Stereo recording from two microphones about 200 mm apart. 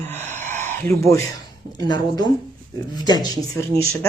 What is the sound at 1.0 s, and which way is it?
Speech, 15° left (ahead or behind).